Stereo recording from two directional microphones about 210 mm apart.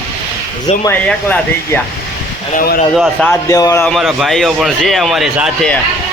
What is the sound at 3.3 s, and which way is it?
A man's voice, 15° left (ahead or behind).